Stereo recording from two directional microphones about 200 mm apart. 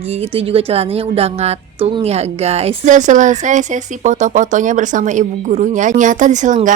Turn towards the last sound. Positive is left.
turn(degrees=-40)  # may be behind; listen again after turning